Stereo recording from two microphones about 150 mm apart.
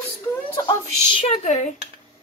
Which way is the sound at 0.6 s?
40° left (ahead or behind).